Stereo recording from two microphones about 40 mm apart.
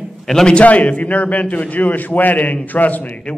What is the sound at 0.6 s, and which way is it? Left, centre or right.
A man's voice, left.